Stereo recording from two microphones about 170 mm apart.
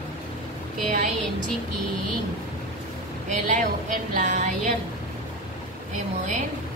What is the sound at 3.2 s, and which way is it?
Speech, 45° right (ahead or behind).